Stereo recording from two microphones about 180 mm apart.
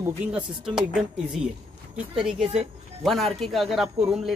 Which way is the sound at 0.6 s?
5° right (ahead or behind).